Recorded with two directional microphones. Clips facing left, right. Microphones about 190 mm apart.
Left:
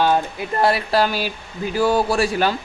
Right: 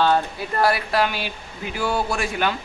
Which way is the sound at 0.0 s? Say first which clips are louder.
Left 1 dB; 15° left (ahead or behind).